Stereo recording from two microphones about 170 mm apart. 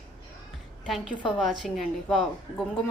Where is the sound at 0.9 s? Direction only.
Centre (ahead or behind).